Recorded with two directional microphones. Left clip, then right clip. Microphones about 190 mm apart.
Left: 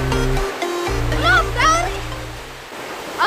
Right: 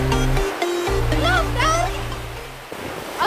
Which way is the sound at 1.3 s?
15° left (ahead or behind).